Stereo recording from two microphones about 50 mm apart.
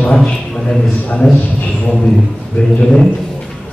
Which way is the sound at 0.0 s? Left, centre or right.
Left.